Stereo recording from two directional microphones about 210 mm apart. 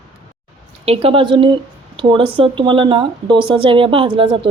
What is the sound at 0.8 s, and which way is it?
Speech, 30° right (ahead or behind).